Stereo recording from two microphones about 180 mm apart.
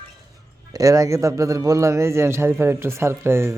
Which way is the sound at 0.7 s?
20° right (ahead or behind).